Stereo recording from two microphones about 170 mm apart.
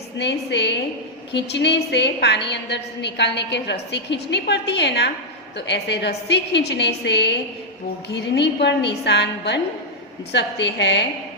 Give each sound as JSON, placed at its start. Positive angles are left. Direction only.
{"t": 0.2, "sound": "a woman's voice", "side_deg": 90}